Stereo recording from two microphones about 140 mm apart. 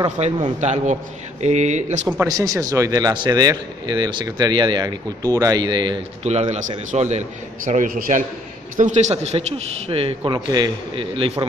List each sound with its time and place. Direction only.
0.2 s a man's voice: 50° right (ahead or behind)
2.2 s speech: 25° right (ahead or behind)
6.2 s a man's voice: 50° right (ahead or behind); by 8.2 s 80° right
8.7 s speech: 60° right (ahead or behind); by 11.4 s 40° right (ahead or behind)